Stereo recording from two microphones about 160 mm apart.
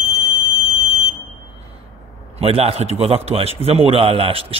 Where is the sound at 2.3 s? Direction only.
40° right (ahead or behind).